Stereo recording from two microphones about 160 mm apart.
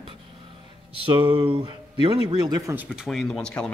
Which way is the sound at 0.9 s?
30° right (ahead or behind).